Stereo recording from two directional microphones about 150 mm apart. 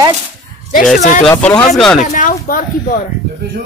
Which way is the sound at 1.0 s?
50° left (ahead or behind).